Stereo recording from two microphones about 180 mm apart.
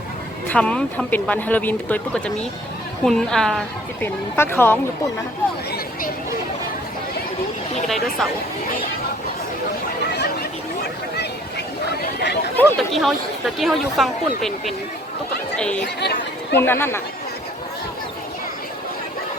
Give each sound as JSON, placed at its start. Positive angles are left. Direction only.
{"t": 0.4, "sound": "speech", "side_deg": 5}
{"t": 7.9, "sound": "speech", "side_deg": 0}
{"t": 12.2, "sound": "a sound", "side_deg": 70}
{"t": 12.5, "sound": "speech", "side_deg": 0}
{"t": 16.0, "sound": "chatter", "side_deg": 65}
{"t": 16.6, "sound": "speech", "side_deg": 10}